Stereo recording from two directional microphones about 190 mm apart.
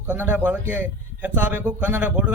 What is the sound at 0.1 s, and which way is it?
A man's voice, 10° right (ahead or behind).